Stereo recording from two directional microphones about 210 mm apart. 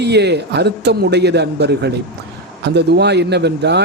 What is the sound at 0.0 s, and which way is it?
A man's voice, 50° right (ahead or behind).